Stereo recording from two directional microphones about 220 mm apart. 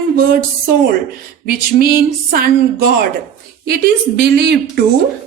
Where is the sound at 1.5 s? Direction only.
40° right (ahead or behind).